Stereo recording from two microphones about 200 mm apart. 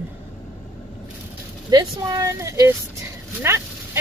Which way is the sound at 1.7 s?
20° right (ahead or behind).